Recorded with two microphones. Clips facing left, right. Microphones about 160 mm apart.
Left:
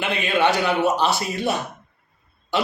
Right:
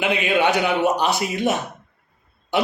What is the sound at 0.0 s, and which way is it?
A man's voice, 15° right (ahead or behind).